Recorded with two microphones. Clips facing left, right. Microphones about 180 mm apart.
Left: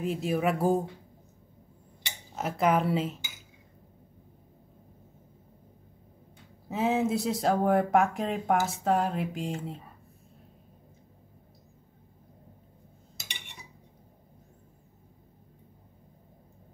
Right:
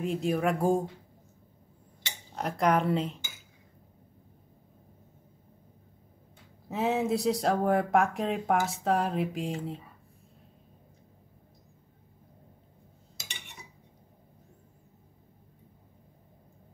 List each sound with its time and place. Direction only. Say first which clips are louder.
0.0 s speech: even; centre (ahead or behind)
2.0 s cutlery: even; 5° left (ahead or behind)
6.7 s speech: left 1 dB; centre (ahead or behind)